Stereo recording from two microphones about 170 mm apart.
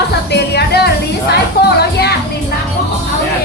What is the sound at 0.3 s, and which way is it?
Music, 75° left (ahead or behind).